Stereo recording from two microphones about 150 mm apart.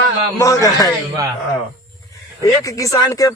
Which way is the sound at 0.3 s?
20° left (ahead or behind).